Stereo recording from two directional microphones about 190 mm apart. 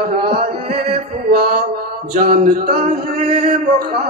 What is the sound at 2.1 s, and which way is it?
Male singing, 50° right (ahead or behind).